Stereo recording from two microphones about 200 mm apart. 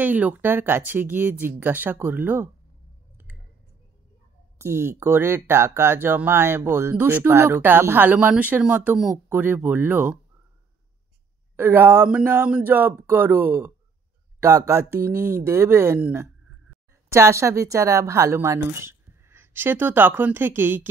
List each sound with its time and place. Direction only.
0.0 s speech: 10° right (ahead or behind)
4.6 s speech: 10° right (ahead or behind)
11.5 s speech: 10° right (ahead or behind)